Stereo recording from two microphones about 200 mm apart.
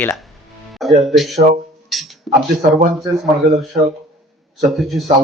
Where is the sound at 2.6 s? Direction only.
45° right (ahead or behind).